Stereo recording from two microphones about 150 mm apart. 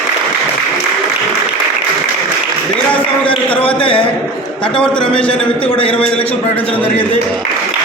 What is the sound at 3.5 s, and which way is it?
Speech, 10° left (ahead or behind).